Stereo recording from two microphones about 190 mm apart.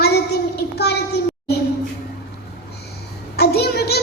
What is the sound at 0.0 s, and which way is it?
Child singing, 60° left (ahead or behind).